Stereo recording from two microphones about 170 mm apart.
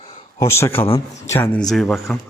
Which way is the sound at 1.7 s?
Centre (ahead or behind).